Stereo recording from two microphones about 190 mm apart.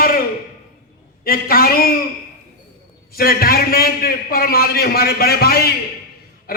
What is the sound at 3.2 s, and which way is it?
A man's voice, 50° left (ahead or behind).